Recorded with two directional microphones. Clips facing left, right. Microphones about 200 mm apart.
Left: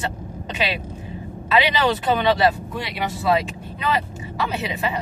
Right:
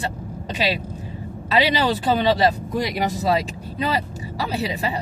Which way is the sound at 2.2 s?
40° right (ahead or behind).